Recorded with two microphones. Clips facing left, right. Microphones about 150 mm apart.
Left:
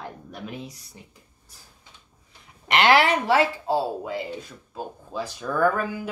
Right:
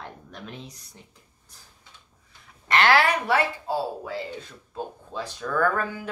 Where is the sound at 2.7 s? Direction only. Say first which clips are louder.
Left 2 dB; 20° left (ahead or behind).